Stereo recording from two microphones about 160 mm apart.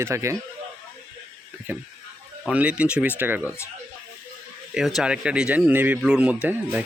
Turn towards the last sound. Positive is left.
turn(degrees=-10)  # may be behind; listen again after turning